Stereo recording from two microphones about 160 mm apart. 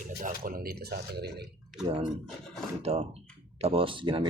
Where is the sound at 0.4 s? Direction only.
65° right (ahead or behind); by 1.5 s 90° right.